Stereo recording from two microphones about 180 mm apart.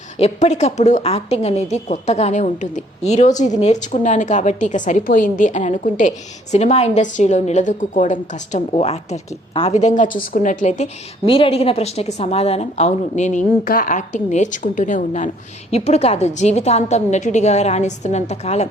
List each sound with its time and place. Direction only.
0.2 s a woman's voice: 40° left (ahead or behind)
11.3 s a woman's voice: 30° left (ahead or behind)